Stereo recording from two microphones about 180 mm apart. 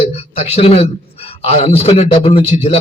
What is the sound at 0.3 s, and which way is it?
A man's voice, 35° left (ahead or behind).